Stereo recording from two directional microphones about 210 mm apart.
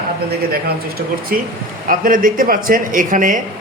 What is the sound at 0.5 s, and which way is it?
Speech, 45° right (ahead or behind).